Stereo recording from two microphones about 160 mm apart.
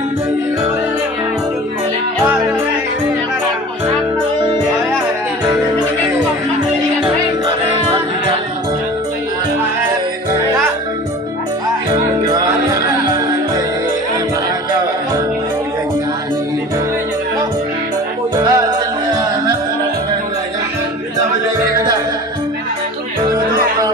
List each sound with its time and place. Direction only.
11.9 s music: 25° right (ahead or behind)
18.3 s music: 25° right (ahead or behind)